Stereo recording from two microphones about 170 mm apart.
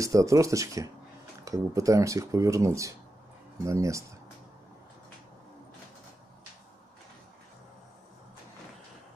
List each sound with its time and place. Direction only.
0.0 s speech: 20° right (ahead or behind)